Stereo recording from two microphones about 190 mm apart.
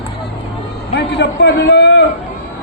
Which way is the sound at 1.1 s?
65° left (ahead or behind).